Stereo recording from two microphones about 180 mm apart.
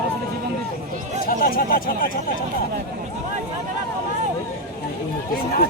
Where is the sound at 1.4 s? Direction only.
55° left (ahead or behind).